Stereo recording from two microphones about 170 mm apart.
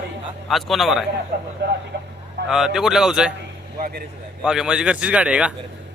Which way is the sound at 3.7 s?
60° right (ahead or behind).